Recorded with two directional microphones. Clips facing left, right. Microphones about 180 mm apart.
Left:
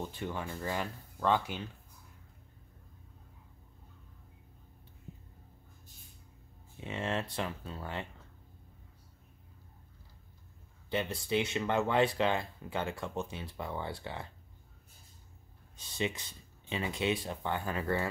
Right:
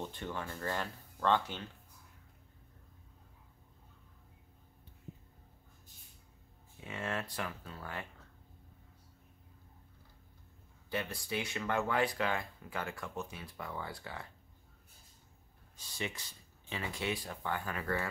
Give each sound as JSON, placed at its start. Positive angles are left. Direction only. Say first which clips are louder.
{"t": 0.1, "sound": "speech", "louder": "left 3 dB", "side_deg": 10}
{"t": 6.8, "sound": "speech", "louder": "left 4 dB", "side_deg": 25}
{"t": 10.9, "sound": "speech", "louder": "left 5 dB", "side_deg": 25}
{"t": 15.7, "sound": "speech", "louder": "left 6 dB", "side_deg": 20}